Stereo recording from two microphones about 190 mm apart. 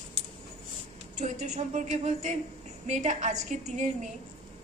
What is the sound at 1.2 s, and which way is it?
A woman's voice, 40° right (ahead or behind).